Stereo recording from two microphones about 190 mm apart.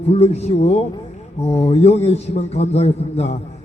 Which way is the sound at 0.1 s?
30° left (ahead or behind).